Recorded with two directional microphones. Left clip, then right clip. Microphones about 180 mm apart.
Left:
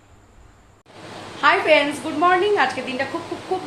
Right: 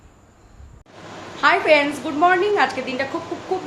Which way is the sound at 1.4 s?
5° right (ahead or behind).